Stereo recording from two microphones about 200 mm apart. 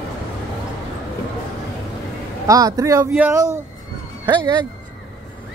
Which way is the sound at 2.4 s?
15° right (ahead or behind).